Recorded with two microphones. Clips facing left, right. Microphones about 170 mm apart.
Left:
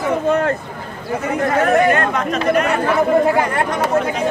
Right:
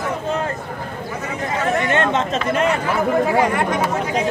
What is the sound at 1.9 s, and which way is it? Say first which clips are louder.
Chatter: left 1 dB; 25° right (ahead or behind).